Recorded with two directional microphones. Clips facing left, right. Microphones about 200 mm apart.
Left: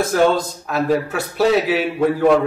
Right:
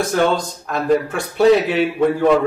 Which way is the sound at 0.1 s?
5° left (ahead or behind).